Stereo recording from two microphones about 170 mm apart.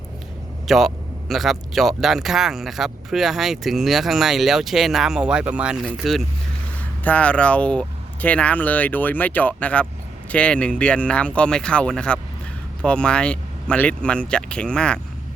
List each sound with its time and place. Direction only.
0.7 s speech: centre (ahead or behind)
7.0 s speech: 10° left (ahead or behind)